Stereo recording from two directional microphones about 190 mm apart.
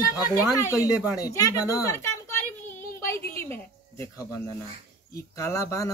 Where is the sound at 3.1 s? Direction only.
15° left (ahead or behind).